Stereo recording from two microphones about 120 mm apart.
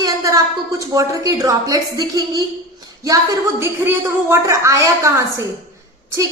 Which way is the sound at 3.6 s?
20° right (ahead or behind).